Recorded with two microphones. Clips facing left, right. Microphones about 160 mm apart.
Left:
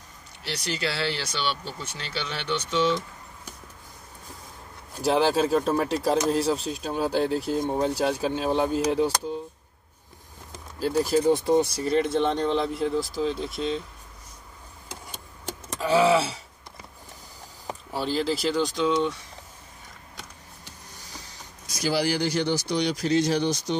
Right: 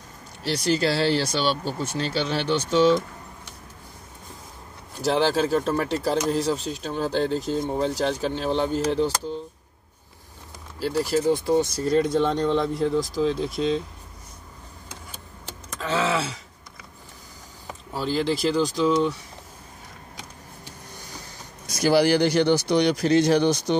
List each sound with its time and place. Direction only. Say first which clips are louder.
0.4 s speech: right 8 dB; 40° right (ahead or behind)
5.0 s speech: even; 10° left (ahead or behind)
10.8 s speech: left 1 dB; 15° left (ahead or behind)
11.8 s speech: right 2 dB; 5° left (ahead or behind)
15.8 s a sound: left 5 dB; 10° left (ahead or behind)
17.9 s speech: right 2 dB; centre (ahead or behind)
21.6 s speech: right 6 dB; 60° right (ahead or behind)